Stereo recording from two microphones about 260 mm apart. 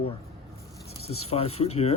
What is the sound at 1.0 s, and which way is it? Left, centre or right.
Speech, left.